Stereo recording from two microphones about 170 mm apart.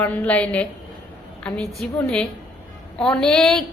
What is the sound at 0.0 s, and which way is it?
A woman's voice, 10° left (ahead or behind).